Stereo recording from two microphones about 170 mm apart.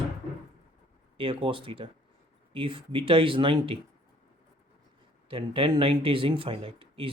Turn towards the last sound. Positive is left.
turn(degrees=-30)  # may be behind; listen again after turning